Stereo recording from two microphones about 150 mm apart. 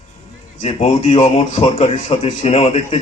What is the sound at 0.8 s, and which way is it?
A man's voice, 45° left (ahead or behind).